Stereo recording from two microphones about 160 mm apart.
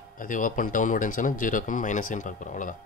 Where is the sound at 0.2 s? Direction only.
55° left (ahead or behind).